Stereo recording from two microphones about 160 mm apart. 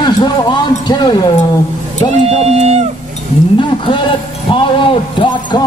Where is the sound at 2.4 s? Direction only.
40° right (ahead or behind).